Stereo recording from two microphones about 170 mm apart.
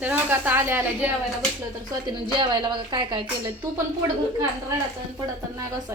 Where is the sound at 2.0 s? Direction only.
25° right (ahead or behind).